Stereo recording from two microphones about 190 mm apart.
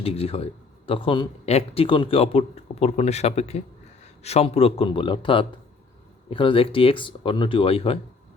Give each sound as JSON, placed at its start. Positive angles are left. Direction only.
{"t": 0.0, "sound": "speech", "side_deg": 30}